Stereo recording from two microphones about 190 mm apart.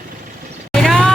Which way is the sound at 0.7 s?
Centre (ahead or behind).